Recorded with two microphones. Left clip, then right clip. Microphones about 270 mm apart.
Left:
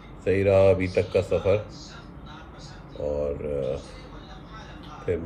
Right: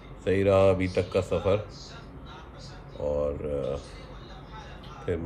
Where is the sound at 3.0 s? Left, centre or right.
Centre.